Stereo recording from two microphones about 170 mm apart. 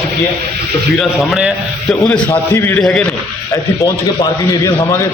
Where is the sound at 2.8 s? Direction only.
5° left (ahead or behind).